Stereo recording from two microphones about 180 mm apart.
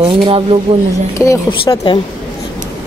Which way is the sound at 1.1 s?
15° left (ahead or behind).